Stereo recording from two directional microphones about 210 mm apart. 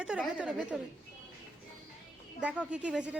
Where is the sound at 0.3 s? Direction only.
5° right (ahead or behind).